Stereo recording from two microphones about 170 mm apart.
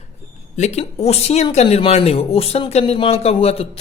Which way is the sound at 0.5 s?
40° left (ahead or behind).